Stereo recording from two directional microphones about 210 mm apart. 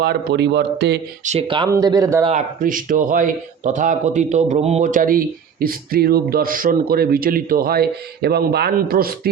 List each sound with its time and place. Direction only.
0.0 s a man's voice: 50° right (ahead or behind)
1.2 s speech: 30° right (ahead or behind); by 2.2 s 15° right (ahead or behind)
2.6 s a man's voice: 40° right (ahead or behind)